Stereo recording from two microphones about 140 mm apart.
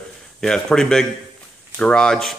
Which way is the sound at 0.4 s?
5° left (ahead or behind).